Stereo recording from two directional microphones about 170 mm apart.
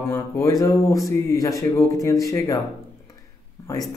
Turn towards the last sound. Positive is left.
turn(degrees=20)  # may be behind; listen again after turning